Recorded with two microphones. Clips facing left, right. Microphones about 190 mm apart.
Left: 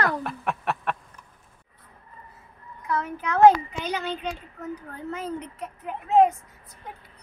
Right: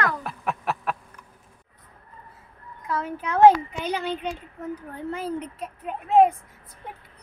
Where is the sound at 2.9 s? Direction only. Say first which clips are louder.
Even; 30° right (ahead or behind).